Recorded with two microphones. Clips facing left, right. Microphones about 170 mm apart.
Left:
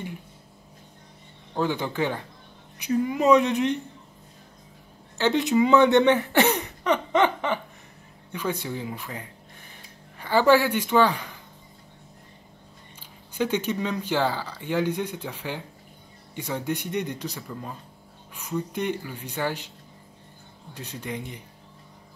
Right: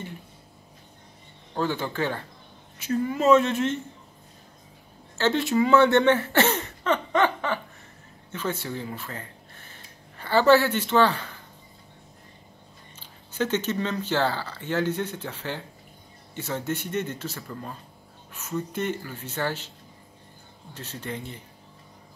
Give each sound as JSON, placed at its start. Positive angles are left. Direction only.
{"t": 1.5, "sound": "speech", "side_deg": 15}
{"t": 5.1, "sound": "speech", "side_deg": 15}
{"t": 13.0, "sound": "speech", "side_deg": 10}
{"t": 20.7, "sound": "speech", "side_deg": 15}